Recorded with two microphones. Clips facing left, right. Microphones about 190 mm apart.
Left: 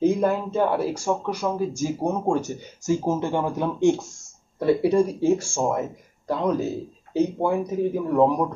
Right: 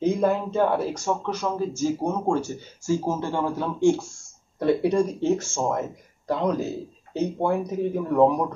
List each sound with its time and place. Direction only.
0.0 s a man's voice: 5° left (ahead or behind)
4.6 s a man's voice: 5° left (ahead or behind)